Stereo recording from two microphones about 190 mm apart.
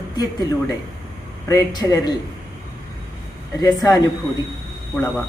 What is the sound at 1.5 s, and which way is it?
Speech, 20° left (ahead or behind).